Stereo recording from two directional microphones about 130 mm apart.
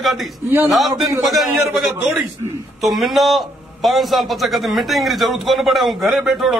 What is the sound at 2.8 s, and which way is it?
A man's voice, centre (ahead or behind).